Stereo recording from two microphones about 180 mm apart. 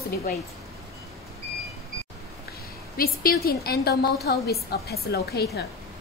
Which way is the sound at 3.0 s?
55° left (ahead or behind).